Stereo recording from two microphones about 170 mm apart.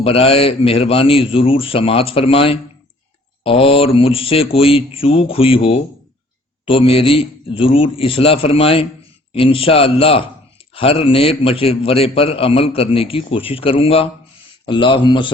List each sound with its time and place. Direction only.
0.0 s a man's voice: 35° left (ahead or behind)